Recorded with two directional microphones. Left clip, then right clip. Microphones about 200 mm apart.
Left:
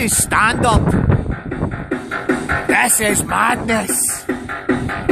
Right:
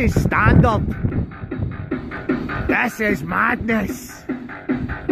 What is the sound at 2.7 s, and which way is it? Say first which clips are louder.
Speech: left 3 dB; 20° left (ahead or behind).